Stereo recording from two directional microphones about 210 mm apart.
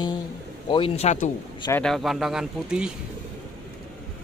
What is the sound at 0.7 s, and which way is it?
Speech, 25° left (ahead or behind).